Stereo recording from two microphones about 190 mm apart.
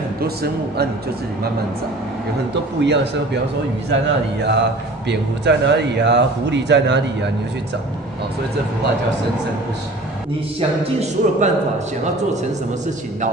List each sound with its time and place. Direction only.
0.2 s speech: 55° right (ahead or behind)
2.5 s a man's voice: 65° right (ahead or behind)
11.0 s speech: 40° right (ahead or behind)